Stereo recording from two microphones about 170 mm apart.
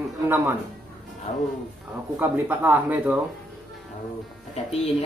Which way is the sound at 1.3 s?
35° left (ahead or behind).